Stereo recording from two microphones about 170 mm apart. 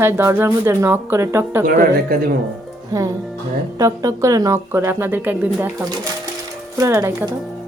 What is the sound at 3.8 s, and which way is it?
A woman's voice, 20° right (ahead or behind).